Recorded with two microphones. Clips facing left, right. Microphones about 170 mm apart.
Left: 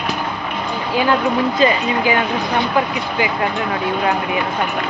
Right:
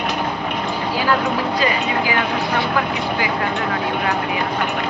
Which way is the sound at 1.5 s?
25° left (ahead or behind).